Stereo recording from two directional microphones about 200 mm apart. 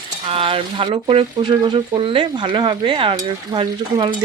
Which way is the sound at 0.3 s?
30° right (ahead or behind).